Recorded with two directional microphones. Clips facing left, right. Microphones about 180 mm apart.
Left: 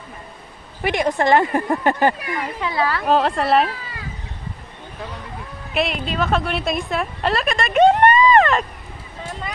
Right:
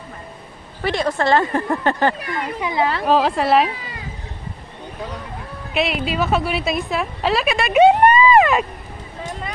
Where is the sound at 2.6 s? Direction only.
20° right (ahead or behind).